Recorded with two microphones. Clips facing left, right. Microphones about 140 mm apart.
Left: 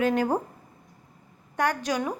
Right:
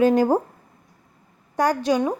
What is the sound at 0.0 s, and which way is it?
Speech, 30° right (ahead or behind).